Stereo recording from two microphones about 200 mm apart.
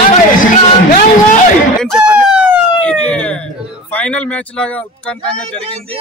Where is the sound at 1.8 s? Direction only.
5° right (ahead or behind).